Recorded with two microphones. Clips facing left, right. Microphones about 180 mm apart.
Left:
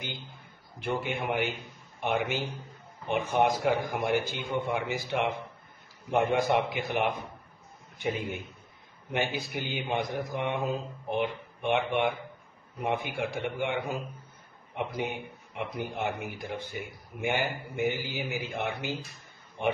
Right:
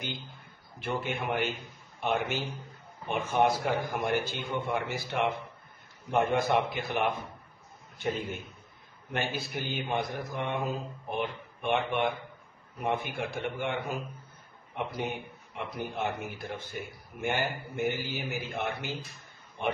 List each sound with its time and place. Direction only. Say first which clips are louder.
0.7 s a man's voice: left 1 dB; 15° left (ahead or behind)
15.0 s a man's voice: left 1 dB; 15° left (ahead or behind)